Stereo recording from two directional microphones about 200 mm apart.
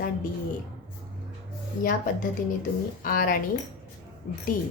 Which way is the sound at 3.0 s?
45° left (ahead or behind).